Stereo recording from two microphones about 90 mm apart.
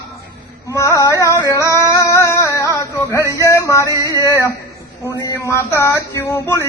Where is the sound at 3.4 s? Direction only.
35° left (ahead or behind).